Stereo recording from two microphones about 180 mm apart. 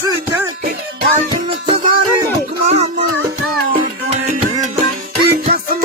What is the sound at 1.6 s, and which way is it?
Music, 30° right (ahead or behind).